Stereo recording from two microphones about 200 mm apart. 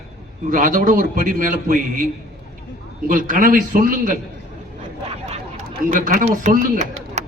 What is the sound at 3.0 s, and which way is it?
A man's voice, 40° right (ahead or behind).